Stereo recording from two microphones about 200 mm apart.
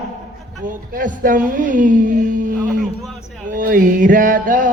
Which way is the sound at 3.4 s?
45° right (ahead or behind).